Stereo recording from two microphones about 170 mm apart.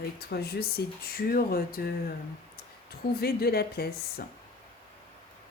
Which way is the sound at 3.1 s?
65° left (ahead or behind).